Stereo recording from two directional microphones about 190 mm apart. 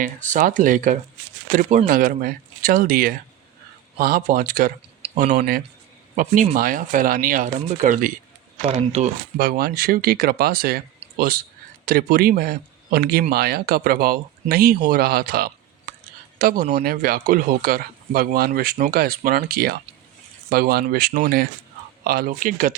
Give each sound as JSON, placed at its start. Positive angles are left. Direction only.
{"t": 0.0, "sound": "speech", "side_deg": -45}
{"t": 9.4, "sound": "speech", "side_deg": -50}